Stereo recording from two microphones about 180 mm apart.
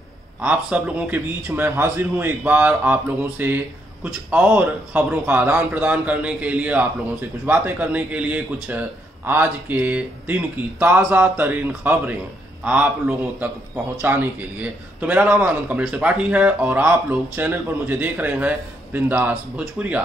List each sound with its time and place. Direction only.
0.4 s a man's voice: 5° right (ahead or behind)